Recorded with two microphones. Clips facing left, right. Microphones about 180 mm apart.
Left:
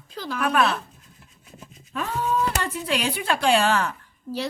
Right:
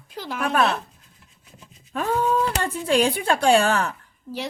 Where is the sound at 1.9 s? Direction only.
45° right (ahead or behind).